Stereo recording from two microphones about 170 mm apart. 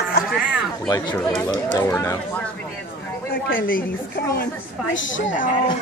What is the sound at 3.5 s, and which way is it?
Speech, 55° left (ahead or behind).